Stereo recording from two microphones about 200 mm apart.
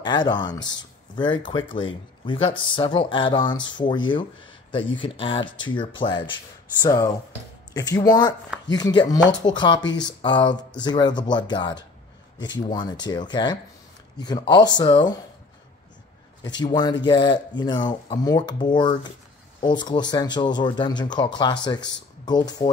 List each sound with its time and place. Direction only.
0.0 s speech: 20° left (ahead or behind)
16.4 s speech: 20° left (ahead or behind)